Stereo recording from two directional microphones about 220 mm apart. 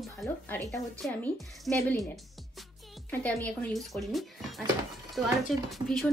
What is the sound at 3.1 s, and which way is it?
Speech, 5° left (ahead or behind).